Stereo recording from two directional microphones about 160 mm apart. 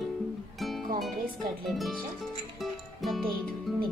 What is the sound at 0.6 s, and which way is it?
Music, centre (ahead or behind).